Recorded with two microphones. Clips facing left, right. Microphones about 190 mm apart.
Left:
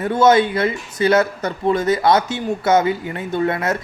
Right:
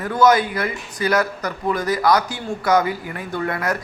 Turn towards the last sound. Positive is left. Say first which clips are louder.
# left 4 dB
turn(degrees=25)  # may be behind; listen again after turning